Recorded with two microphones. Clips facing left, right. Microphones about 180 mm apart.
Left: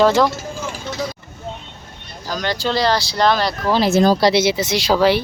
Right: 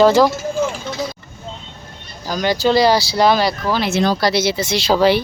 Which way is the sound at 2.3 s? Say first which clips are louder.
Right 5 dB; 10° right (ahead or behind).